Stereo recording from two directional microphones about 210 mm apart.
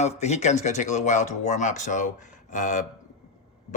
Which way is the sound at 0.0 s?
30° left (ahead or behind).